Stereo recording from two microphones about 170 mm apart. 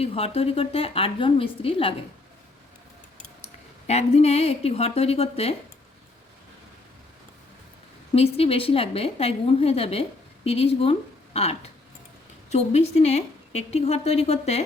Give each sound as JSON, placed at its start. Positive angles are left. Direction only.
{"t": 0.0, "sound": "a woman's voice", "side_deg": 35}
{"t": 3.4, "sound": "speech", "side_deg": 40}
{"t": 8.1, "sound": "a woman's voice", "side_deg": 35}